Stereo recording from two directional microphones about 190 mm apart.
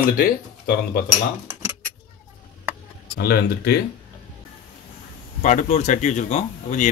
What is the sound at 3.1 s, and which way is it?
Speech, 55° left (ahead or behind).